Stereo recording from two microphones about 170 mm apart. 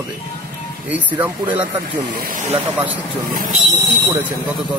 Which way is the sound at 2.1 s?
50° right (ahead or behind).